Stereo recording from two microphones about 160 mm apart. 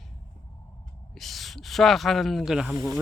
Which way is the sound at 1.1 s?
Centre (ahead or behind).